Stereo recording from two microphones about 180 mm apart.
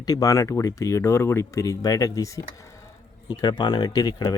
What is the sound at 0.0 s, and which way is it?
Speech, 20° left (ahead or behind).